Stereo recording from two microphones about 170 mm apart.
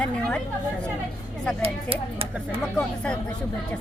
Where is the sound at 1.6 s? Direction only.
35° right (ahead or behind).